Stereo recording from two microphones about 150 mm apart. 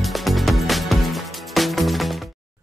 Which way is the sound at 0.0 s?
Centre (ahead or behind).